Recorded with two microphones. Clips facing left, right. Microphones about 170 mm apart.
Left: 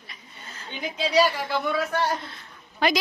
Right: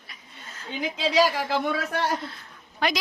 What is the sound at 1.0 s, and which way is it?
A man's voice, 90° right.